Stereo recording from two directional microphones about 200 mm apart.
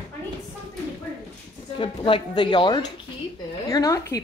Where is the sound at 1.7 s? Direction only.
25° left (ahead or behind).